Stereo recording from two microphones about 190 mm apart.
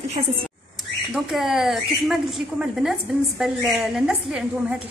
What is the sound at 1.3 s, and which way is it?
A woman's voice, centre (ahead or behind).